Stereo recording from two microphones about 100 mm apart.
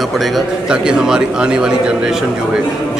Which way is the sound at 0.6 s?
10° right (ahead or behind).